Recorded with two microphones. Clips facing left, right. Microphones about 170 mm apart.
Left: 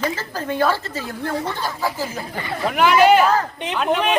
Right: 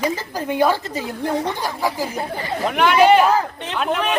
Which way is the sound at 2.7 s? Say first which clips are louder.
Even; centre (ahead or behind).